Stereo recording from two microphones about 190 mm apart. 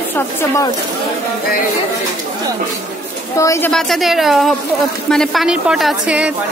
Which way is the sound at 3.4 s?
15° left (ahead or behind).